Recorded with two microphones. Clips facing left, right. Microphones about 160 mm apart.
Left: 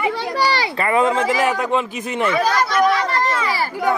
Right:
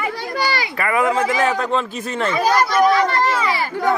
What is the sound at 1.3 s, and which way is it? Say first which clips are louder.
Speech: even; 15° left (ahead or behind).